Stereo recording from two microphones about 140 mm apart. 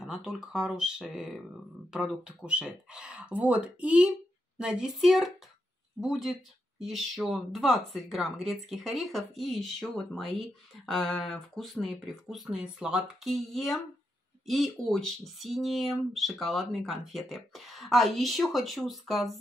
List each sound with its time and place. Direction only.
0.0 s speech: centre (ahead or behind)